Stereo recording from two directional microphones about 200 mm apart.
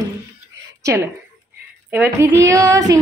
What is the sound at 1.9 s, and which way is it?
Speech, 10° right (ahead or behind).